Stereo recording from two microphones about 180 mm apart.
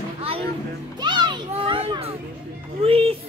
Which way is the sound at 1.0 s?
25° right (ahead or behind).